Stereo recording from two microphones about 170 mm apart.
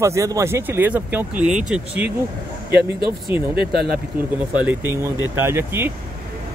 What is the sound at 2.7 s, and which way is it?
Speech, 65° right (ahead or behind).